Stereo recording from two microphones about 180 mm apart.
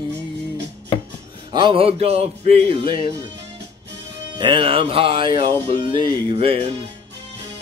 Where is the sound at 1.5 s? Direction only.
25° right (ahead or behind).